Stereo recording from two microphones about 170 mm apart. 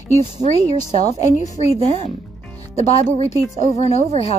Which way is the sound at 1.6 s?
40° right (ahead or behind).